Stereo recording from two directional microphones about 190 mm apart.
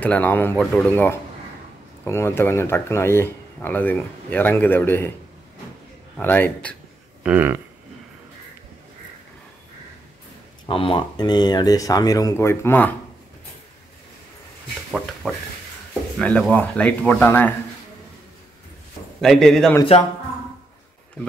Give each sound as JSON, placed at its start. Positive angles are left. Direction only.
{"t": 0.0, "sound": "speech", "side_deg": 10}
{"t": 6.1, "sound": "speech", "side_deg": 10}
{"t": 7.2, "sound": "speech", "side_deg": -10}
{"t": 10.7, "sound": "speech", "side_deg": 30}
{"t": 15.2, "sound": "speech", "side_deg": 0}
{"t": 19.2, "sound": "speech", "side_deg": 0}
{"t": 19.8, "sound": "speech", "side_deg": 30}